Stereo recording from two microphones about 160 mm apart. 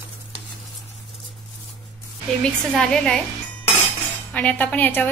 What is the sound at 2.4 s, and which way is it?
Speech, 5° left (ahead or behind).